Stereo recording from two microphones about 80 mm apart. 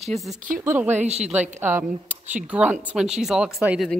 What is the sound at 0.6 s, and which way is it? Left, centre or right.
A woman's voice, right.